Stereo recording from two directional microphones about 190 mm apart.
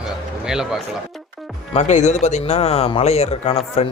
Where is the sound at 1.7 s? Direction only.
35° left (ahead or behind).